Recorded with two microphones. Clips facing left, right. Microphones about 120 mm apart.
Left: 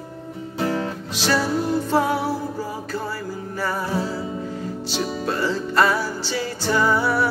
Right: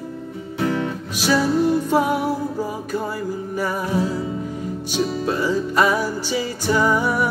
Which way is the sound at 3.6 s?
15° right (ahead or behind).